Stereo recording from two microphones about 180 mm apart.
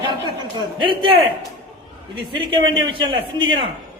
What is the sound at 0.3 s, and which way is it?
A man's voice, 25° right (ahead or behind).